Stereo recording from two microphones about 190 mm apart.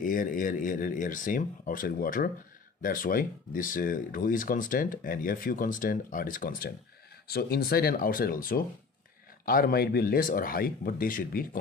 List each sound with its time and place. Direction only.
0.0 s speech: 45° left (ahead or behind)